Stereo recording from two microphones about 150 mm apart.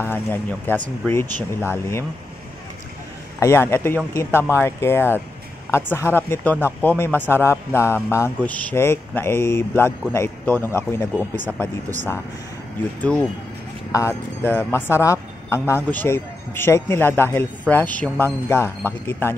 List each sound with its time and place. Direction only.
0.0 s a man's voice: 15° left (ahead or behind)
3.3 s a man's voice: 20° left (ahead or behind)
13.0 s a man's voice: 10° left (ahead or behind)